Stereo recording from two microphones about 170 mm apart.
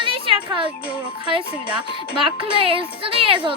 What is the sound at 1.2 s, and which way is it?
Speech, 30° right (ahead or behind).